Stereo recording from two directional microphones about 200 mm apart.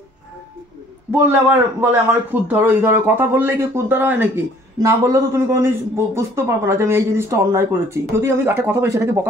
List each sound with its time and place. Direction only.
1.1 s a man's voice: 10° right (ahead or behind)